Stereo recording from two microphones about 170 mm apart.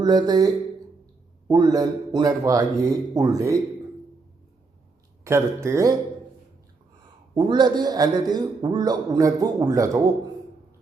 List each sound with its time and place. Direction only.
0.0 s a man's voice: 25° right (ahead or behind)
5.2 s speech: 15° right (ahead or behind)
7.3 s a man's voice: 25° right (ahead or behind)